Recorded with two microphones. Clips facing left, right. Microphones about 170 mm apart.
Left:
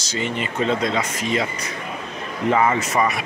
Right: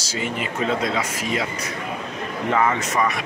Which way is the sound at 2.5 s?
5° left (ahead or behind).